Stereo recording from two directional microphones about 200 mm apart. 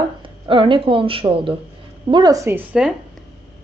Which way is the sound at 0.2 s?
25° right (ahead or behind).